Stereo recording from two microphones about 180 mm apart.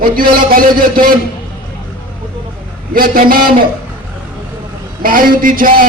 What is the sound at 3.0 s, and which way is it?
Speech, 50° right (ahead or behind).